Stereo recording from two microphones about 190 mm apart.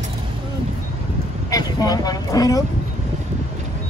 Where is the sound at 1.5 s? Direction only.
20° left (ahead or behind).